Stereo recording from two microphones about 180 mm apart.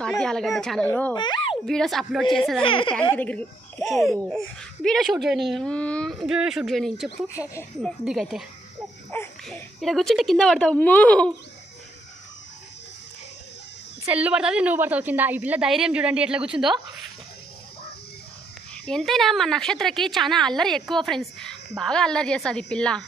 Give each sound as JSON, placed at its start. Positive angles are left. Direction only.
{"t": 0.2, "sound": "a woman's voice", "side_deg": 5}
{"t": 1.1, "sound": "a sound", "side_deg": 25}
{"t": 1.7, "sound": "a woman's voice", "side_deg": 0}
{"t": 2.6, "sound": "a woman's voice", "side_deg": 30}
{"t": 3.2, "sound": "a woman's voice", "side_deg": 10}
{"t": 14.0, "sound": "a woman's voice", "side_deg": -10}
{"t": 18.9, "sound": "a woman's voice", "side_deg": 0}